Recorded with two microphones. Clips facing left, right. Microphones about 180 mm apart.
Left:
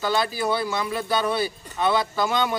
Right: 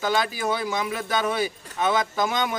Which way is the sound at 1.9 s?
15° right (ahead or behind).